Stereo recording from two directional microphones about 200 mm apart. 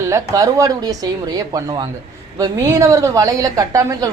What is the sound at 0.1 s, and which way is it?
Speech, 15° right (ahead or behind).